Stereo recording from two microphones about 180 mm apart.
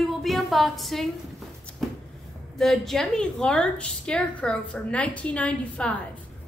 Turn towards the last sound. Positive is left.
turn(degrees=5)  # may be behind; listen again after turning